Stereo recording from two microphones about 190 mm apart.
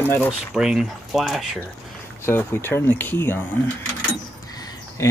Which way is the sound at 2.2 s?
10° left (ahead or behind).